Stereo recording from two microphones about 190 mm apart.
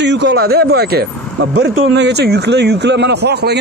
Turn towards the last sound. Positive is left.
turn(degrees=-60)  # may be behind; listen again after turning